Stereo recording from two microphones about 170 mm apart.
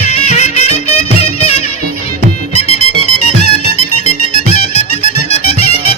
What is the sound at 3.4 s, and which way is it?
Music, 40° left (ahead or behind).